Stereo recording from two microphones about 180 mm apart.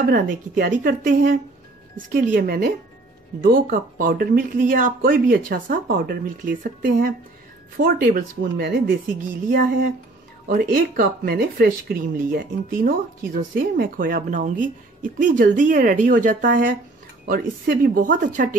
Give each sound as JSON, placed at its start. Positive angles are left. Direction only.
{"t": 0.1, "sound": "speech", "side_deg": -50}